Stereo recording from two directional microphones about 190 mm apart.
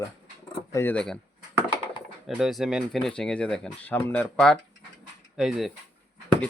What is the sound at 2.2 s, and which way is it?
Speech, centre (ahead or behind).